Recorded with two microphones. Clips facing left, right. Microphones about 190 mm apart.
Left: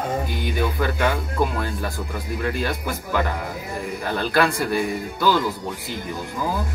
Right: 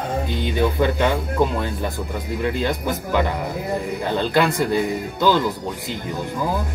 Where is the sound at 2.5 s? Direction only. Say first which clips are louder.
Right 4 dB; 20° right (ahead or behind).